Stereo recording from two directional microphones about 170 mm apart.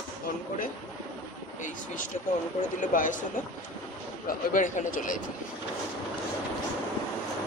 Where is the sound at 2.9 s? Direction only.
50° left (ahead or behind).